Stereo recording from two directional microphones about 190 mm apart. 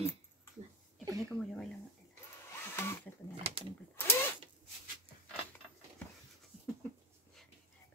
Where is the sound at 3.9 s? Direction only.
10° left (ahead or behind).